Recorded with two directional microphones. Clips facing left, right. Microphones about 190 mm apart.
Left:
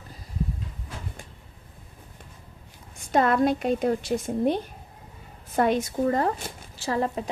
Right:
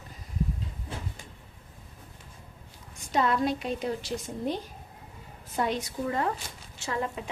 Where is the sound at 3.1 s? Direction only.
55° left (ahead or behind).